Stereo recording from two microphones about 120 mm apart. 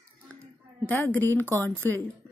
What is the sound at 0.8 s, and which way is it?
Speech, 15° left (ahead or behind).